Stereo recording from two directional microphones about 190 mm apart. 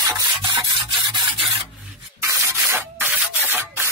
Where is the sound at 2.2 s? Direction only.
15° right (ahead or behind).